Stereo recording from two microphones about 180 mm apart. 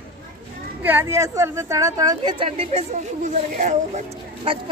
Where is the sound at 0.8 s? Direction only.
15° right (ahead or behind); by 4.0 s 45° right (ahead or behind).